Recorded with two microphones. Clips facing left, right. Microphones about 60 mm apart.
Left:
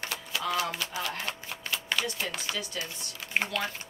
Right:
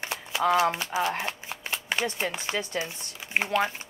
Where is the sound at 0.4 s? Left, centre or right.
Right.